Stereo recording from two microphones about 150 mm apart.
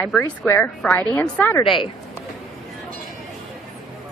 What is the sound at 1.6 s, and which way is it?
Speech, 35° left (ahead or behind).